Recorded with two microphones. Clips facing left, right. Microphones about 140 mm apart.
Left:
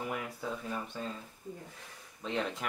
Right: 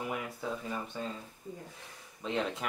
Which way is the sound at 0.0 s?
Centre (ahead or behind).